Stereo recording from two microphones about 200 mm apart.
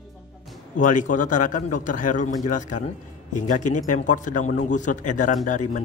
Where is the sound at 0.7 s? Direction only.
40° left (ahead or behind).